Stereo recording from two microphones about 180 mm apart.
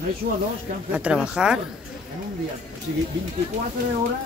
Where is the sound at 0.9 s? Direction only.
5° right (ahead or behind).